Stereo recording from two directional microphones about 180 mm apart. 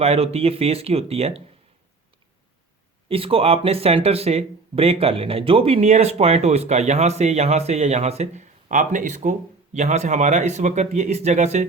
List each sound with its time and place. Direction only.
0.0 s speech: 35° right (ahead or behind)
3.1 s speech: 30° right (ahead or behind)